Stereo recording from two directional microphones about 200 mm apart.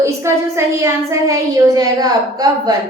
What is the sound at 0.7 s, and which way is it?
A woman's voice, 15° right (ahead or behind).